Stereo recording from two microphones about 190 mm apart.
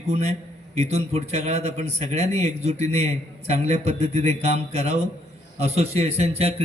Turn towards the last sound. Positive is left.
turn(degrees=-35)  # may be behind; listen again after turning